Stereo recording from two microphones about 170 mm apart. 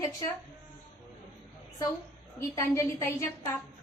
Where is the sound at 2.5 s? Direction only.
15° left (ahead or behind).